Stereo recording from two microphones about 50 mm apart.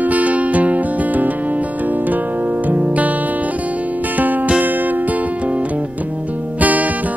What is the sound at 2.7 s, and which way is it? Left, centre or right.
Music, right.